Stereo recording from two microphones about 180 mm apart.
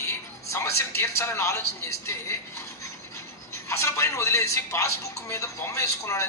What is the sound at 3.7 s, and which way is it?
A man's voice, 15° left (ahead or behind).